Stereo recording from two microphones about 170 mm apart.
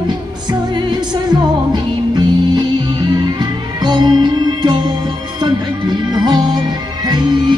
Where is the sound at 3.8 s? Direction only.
25° right (ahead or behind).